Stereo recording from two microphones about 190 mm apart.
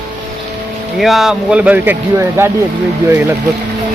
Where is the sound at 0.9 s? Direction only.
Centre (ahead or behind).